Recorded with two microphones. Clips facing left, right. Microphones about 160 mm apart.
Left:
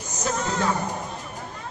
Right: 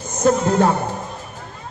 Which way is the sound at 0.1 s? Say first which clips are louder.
Right 12 dB; 55° right (ahead or behind).